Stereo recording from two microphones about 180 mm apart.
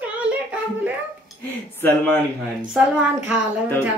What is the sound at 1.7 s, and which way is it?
Speech, 10° left (ahead or behind).